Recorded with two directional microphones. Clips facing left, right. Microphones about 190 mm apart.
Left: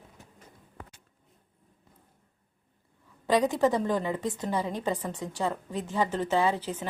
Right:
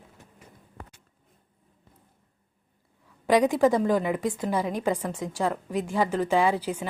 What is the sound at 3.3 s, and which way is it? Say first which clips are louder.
Speech: right 4 dB; 15° right (ahead or behind).